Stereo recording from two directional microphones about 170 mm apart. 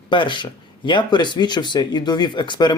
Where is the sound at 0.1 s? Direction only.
30° left (ahead or behind).